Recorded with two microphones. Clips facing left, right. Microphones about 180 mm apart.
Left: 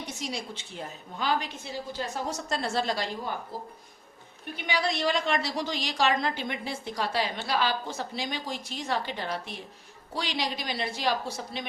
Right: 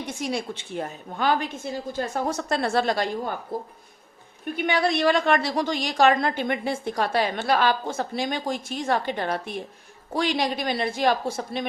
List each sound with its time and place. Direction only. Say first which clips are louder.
0.1 s a woman's voice: right 7 dB; 55° right (ahead or behind)
4.5 s a woman's voice: right 6 dB; 55° right (ahead or behind)